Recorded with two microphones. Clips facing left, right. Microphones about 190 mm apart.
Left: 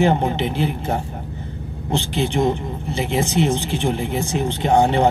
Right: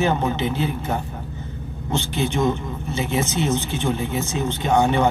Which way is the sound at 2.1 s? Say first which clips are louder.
Left 2 dB; 30° left (ahead or behind).